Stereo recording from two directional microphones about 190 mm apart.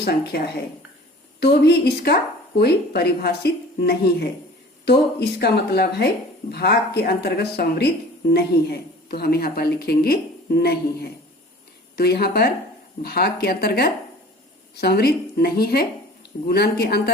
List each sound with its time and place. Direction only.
0.0 s speech: 55° left (ahead or behind)
5.4 s speech: 55° left (ahead or behind)